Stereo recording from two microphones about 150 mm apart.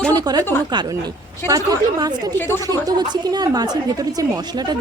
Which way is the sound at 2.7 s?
25° right (ahead or behind).